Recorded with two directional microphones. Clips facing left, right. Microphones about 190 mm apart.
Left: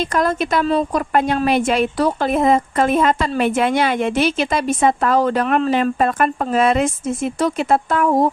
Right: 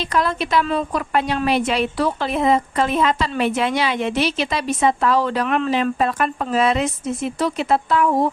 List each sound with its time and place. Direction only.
0.1 s a woman's voice: 45° left (ahead or behind)